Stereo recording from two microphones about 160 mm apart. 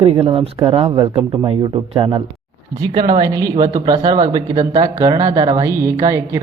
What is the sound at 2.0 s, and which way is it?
Speech, 25° right (ahead or behind).